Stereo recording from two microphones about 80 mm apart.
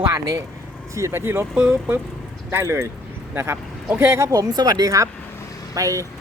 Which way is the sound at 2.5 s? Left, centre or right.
Right.